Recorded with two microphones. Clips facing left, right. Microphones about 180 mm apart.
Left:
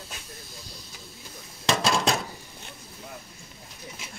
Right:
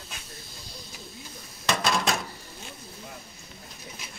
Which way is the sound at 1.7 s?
30° left (ahead or behind).